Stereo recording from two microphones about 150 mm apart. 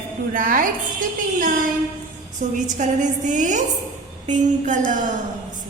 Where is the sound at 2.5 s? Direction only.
55° right (ahead or behind).